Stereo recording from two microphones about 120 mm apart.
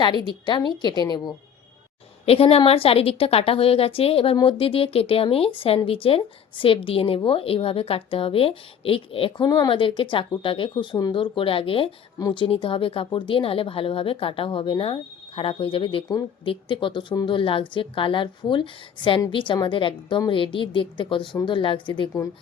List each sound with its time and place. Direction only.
0.0 s a woman's voice: 40° left (ahead or behind)
2.2 s a woman's voice: 55° left (ahead or behind)